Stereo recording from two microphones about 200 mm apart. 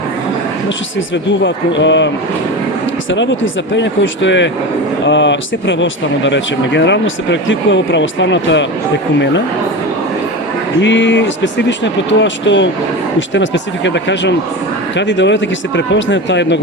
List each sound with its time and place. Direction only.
1.5 s speech: 65° left (ahead or behind)
3.1 s speech: 65° left (ahead or behind)
10.8 s speech: 65° left (ahead or behind)